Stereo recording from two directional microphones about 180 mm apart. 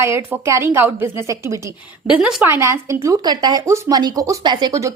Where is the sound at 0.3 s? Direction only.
15° right (ahead or behind).